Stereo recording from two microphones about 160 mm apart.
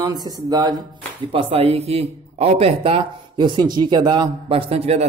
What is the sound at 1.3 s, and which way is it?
Speech, 35° right (ahead or behind).